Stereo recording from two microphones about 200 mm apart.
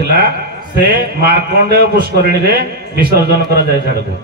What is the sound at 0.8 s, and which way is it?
A man's voice, 50° right (ahead or behind).